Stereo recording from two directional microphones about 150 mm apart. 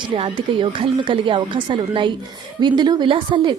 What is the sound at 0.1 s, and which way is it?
A woman's voice, 35° right (ahead or behind).